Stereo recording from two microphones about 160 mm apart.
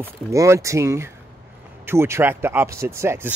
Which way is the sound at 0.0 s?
20° right (ahead or behind).